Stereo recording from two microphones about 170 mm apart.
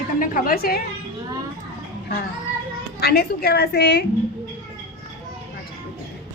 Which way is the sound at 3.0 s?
65° left (ahead or behind).